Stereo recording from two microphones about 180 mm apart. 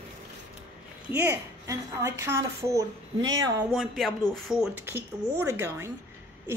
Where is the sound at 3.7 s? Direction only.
Centre (ahead or behind).